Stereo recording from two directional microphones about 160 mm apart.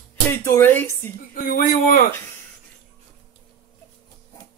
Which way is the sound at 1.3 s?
60° left (ahead or behind).